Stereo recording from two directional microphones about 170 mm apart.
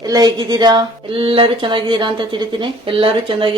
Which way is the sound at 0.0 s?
20° right (ahead or behind).